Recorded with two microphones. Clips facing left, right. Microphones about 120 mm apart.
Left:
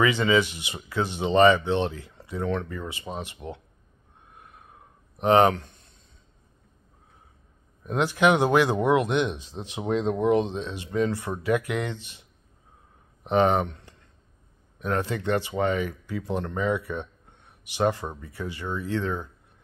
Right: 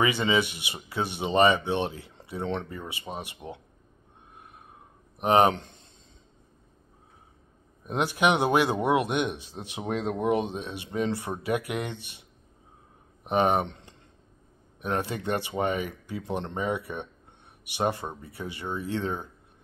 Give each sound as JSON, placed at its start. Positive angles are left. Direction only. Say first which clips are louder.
{"t": 0.0, "sound": "speech", "louder": "left 3 dB", "side_deg": -20}
{"t": 5.1, "sound": "speech", "louder": "left 2 dB", "side_deg": -15}
{"t": 7.8, "sound": "speech", "louder": "left 3 dB", "side_deg": -15}
{"t": 13.2, "sound": "speech", "louder": "left 2 dB", "side_deg": -15}